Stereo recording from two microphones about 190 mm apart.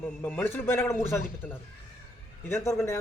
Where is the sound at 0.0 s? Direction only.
10° left (ahead or behind).